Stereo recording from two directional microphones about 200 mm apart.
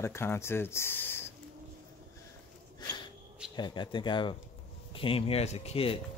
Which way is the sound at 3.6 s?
25° left (ahead or behind).